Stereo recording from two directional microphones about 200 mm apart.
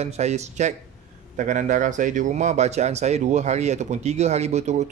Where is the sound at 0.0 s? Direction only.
35° right (ahead or behind).